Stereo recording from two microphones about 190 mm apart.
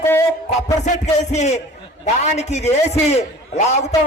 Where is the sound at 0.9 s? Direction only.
35° left (ahead or behind).